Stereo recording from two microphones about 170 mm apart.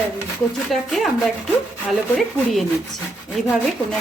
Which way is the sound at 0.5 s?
Centre (ahead or behind).